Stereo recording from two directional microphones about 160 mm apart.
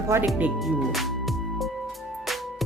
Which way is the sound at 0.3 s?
5° right (ahead or behind).